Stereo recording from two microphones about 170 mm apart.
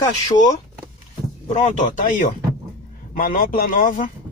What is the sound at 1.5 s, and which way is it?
Speech, 45° left (ahead or behind).